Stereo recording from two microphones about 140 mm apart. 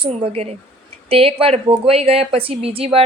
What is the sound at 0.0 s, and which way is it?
A woman's voice, 45° right (ahead or behind).